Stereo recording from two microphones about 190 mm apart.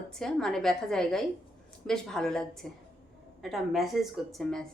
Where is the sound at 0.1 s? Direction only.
5° left (ahead or behind).